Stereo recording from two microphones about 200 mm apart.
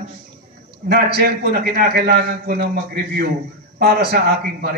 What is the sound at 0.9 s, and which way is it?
A man's voice, 50° right (ahead or behind).